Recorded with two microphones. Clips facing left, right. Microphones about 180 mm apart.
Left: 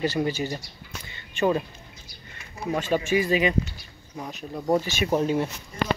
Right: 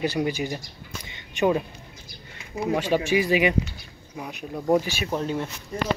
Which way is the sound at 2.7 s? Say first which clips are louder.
Right 1 dB; 10° right (ahead or behind).